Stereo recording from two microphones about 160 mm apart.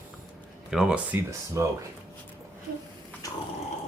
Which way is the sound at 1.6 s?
20° right (ahead or behind).